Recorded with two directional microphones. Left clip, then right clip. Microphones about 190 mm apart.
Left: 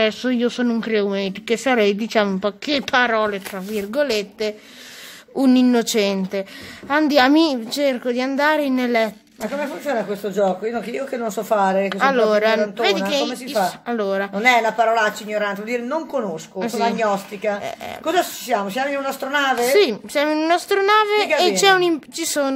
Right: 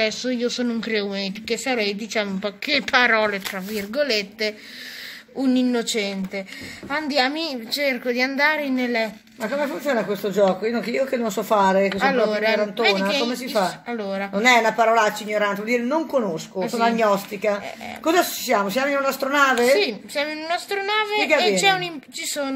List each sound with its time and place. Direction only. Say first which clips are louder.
0.0 s speech: left 3 dB; 45° left (ahead or behind); by 3.8 s 30° left (ahead or behind)
3.9 s speech: left 1 dB; 40° left (ahead or behind)
5.4 s a woman's voice: left 5 dB; 60° left (ahead or behind)
9.8 s speech: left 2 dB; 15° right (ahead or behind)
11.9 s a woman's voice: left 4 dB; 55° left (ahead or behind)
13.8 s a woman's voice: left 5 dB; 55° left (ahead or behind)
14.3 s speech: right 1 dB; 15° right (ahead or behind)
19.8 s a woman's voice: left 5 dB; 55° left (ahead or behind)